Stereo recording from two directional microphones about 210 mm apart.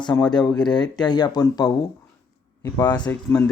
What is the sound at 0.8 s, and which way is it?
Speech, 20° left (ahead or behind).